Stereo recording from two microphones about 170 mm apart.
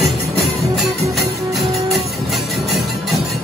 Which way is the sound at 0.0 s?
Centre (ahead or behind).